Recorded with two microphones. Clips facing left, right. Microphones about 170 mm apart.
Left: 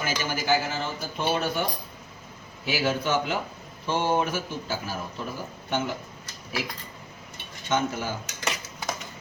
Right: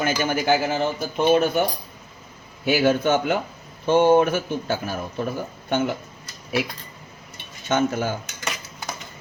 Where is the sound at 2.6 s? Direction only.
55° right (ahead or behind).